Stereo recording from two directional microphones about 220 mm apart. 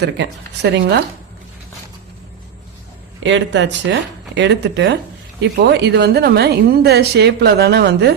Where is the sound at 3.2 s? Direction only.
55° right (ahead or behind).